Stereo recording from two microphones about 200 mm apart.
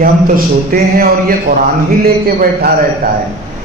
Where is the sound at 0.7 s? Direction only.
45° right (ahead or behind).